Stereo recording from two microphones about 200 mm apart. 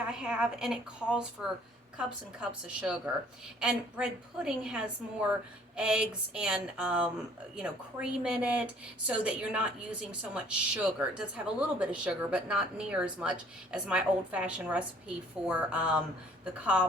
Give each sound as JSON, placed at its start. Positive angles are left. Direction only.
{"t": 0.0, "sound": "a woman's voice", "side_deg": -5}